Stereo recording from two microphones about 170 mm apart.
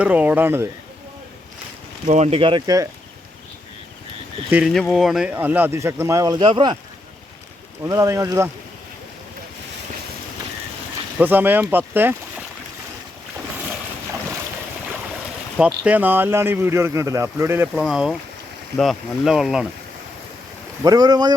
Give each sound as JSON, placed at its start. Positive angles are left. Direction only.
{"t": 0.0, "sound": "speech", "side_deg": -10}
{"t": 2.0, "sound": "speech", "side_deg": -40}
{"t": 4.5, "sound": "speech", "side_deg": 0}
{"t": 7.9, "sound": "speech", "side_deg": -20}
{"t": 11.2, "sound": "speech", "side_deg": -10}
{"t": 15.5, "sound": "speech", "side_deg": -5}
{"t": 17.8, "sound": "speech", "side_deg": -5}
{"t": 20.8, "sound": "speech", "side_deg": -20}